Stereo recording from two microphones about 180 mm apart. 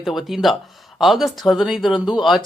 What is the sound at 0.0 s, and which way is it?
Speech, centre (ahead or behind).